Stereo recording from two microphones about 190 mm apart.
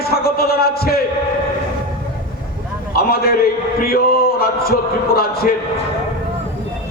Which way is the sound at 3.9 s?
55° left (ahead or behind).